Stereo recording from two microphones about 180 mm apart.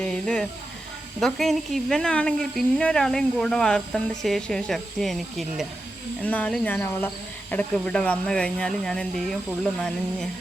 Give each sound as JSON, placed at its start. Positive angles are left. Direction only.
{"t": 0.0, "sound": "speech", "side_deg": 5}